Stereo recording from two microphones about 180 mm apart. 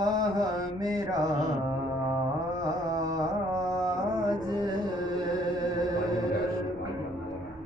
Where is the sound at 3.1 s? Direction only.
20° right (ahead or behind).